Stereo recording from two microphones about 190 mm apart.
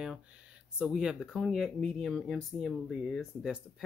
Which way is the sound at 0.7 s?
5° right (ahead or behind).